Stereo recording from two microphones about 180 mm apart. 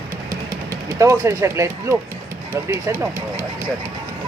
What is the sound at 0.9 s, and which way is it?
Speech, 15° right (ahead or behind).